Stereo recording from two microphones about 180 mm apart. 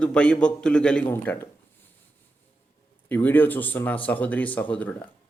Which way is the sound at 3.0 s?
10° left (ahead or behind).